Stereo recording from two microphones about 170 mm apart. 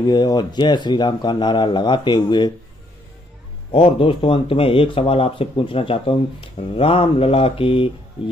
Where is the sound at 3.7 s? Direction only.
30° left (ahead or behind).